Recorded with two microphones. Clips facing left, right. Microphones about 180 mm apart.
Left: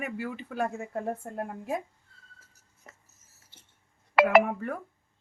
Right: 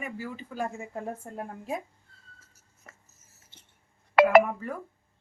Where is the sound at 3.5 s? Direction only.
20° right (ahead or behind).